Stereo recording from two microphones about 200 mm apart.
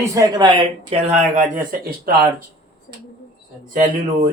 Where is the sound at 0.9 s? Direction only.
35° right (ahead or behind).